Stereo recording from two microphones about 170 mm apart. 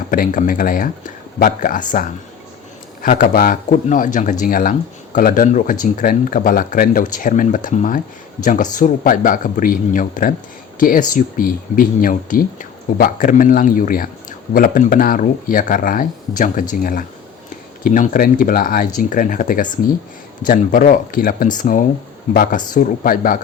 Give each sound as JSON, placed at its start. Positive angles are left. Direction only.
{"t": 0.1, "sound": "speech", "side_deg": 50}